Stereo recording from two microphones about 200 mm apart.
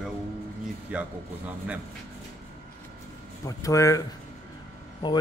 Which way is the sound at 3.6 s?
15° left (ahead or behind).